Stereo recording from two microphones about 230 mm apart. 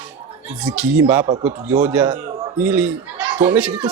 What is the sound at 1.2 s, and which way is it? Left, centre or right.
Speech, right.